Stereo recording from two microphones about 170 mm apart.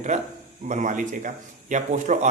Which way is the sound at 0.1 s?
40° right (ahead or behind).